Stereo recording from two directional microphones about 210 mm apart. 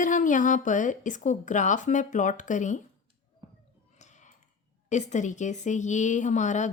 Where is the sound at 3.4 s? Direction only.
20° right (ahead or behind).